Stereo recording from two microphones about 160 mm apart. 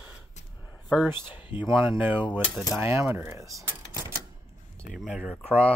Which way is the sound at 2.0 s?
10° right (ahead or behind).